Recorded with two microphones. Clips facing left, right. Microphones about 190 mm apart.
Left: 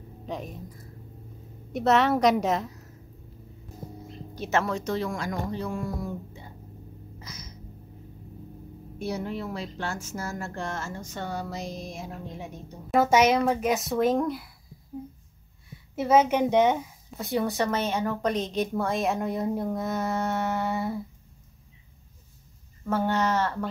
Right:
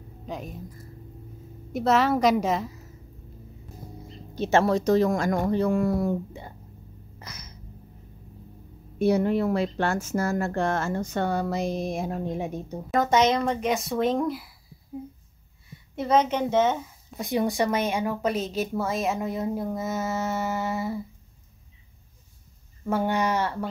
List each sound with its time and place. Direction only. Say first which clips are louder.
0.3 s speech: even; centre (ahead or behind)
4.4 s speech: right 6 dB; 30° right (ahead or behind); by 6.5 s 65° right (ahead or behind)
7.2 s a sound: right 2 dB; 60° right (ahead or behind)
9.0 s speech: right 10 dB; 60° right (ahead or behind)
12.9 s speech: left 1 dB; 10° left (ahead or behind)
16.0 s a woman's voice: left 2 dB; 10° left (ahead or behind)
17.2 s speech: right 2 dB; 15° right (ahead or behind)
22.8 s speech: right 1 dB; 15° right (ahead or behind)